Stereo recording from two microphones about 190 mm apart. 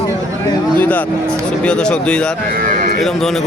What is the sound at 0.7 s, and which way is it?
A man's voice, 10° left (ahead or behind).